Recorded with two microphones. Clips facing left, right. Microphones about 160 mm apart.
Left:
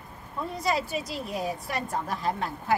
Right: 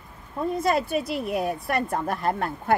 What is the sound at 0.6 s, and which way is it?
A woman's voice, 55° right (ahead or behind).